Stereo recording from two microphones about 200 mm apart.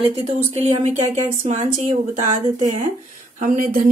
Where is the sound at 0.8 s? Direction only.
35° right (ahead or behind).